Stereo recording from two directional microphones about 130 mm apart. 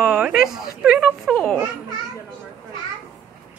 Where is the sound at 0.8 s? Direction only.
5° right (ahead or behind).